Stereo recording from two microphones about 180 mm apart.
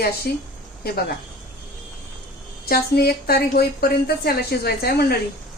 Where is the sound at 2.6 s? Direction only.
60° left (ahead or behind).